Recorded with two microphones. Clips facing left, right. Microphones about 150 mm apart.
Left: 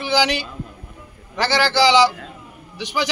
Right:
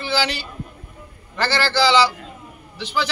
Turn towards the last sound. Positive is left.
turn(degrees=15)  # may be behind; listen again after turning